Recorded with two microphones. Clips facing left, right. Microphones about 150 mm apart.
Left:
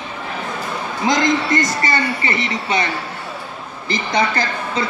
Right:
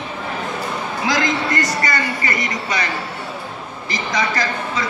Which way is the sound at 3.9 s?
30° left (ahead or behind).